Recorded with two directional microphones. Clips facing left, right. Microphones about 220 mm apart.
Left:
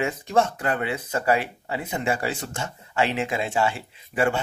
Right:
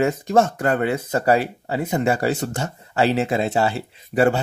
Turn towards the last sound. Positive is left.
turn(degrees=-35)  # may be behind; listen again after turning